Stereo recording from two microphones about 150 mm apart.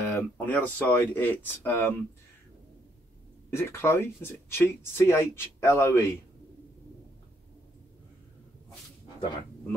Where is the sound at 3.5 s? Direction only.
15° left (ahead or behind).